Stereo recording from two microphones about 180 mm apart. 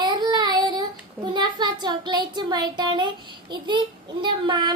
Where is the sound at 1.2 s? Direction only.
25° right (ahead or behind).